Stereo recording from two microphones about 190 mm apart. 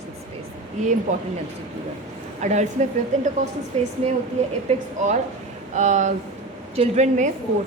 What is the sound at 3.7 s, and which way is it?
Speech, 35° right (ahead or behind).